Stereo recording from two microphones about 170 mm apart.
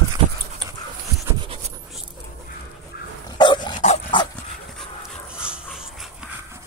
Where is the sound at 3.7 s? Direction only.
40° left (ahead or behind).